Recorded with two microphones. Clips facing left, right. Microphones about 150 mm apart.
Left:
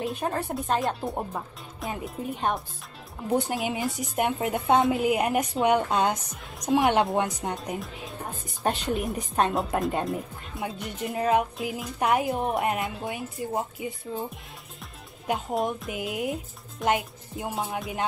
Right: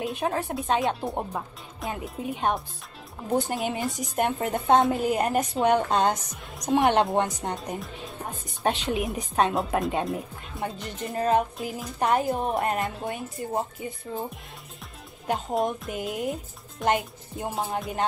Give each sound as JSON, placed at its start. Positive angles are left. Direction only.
{"t": 0.0, "sound": "a woman's voice", "side_deg": 0}
{"t": 15.2, "sound": "a woman's voice", "side_deg": 5}